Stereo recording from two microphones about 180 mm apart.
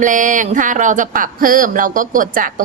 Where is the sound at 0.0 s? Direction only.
45° right (ahead or behind).